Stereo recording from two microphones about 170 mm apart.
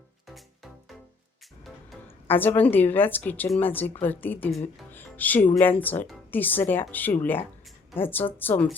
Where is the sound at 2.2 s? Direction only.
10° left (ahead or behind).